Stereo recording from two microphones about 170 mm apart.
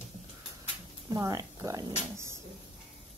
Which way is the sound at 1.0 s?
20° right (ahead or behind).